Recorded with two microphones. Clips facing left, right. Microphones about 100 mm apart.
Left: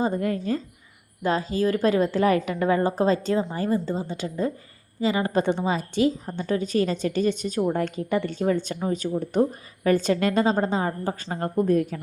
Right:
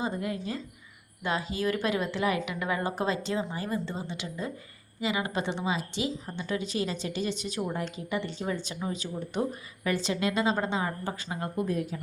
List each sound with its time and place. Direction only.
0.0 s a woman's voice: 45° left (ahead or behind)